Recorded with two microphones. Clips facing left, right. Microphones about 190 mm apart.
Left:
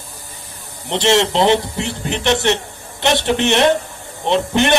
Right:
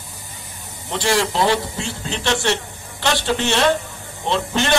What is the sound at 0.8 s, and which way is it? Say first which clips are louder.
A man's voice: left 5 dB; 20° left (ahead or behind).